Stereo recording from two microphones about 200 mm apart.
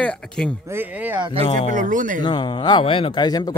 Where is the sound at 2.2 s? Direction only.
25° left (ahead or behind).